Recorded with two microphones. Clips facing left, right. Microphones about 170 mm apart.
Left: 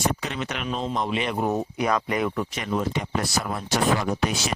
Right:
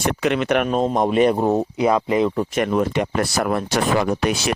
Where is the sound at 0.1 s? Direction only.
70° right (ahead or behind); by 1.4 s 45° right (ahead or behind).